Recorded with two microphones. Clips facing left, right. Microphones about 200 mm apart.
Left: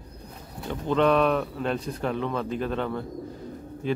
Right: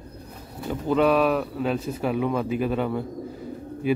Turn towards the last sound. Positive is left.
turn(degrees=-10)  # may be behind; listen again after turning